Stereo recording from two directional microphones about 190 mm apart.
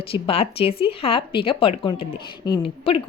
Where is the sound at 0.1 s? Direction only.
30° left (ahead or behind).